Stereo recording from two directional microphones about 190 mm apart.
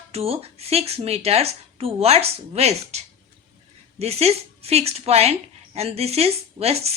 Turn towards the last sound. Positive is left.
turn(degrees=-35)  # may be behind; listen again after turning